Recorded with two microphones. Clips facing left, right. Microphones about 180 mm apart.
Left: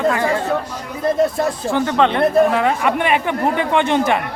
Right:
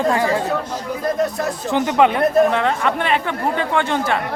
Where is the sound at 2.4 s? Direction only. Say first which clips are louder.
Left 2 dB; 5° left (ahead or behind).